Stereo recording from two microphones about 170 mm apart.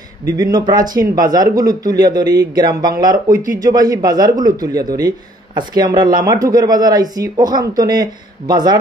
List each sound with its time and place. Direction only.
0.4 s speech: 25° right (ahead or behind)